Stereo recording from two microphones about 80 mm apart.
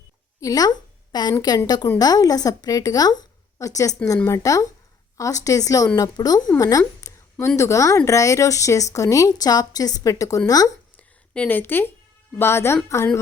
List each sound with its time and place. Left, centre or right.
0.3 s a woman's voice: left
10.9 s a sound: left
12.4 s a woman's voice: left